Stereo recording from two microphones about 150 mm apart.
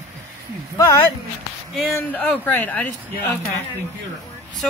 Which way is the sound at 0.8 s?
20° left (ahead or behind).